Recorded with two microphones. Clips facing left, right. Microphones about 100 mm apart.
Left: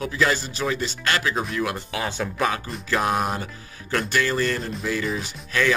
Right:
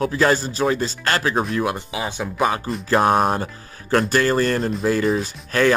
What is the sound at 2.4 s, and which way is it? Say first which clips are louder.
Speech: right 6 dB; 30° right (ahead or behind).